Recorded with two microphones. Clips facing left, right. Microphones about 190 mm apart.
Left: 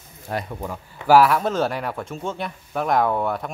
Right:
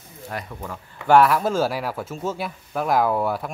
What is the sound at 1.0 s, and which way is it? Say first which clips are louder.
Speech: left 1 dB; centre (ahead or behind).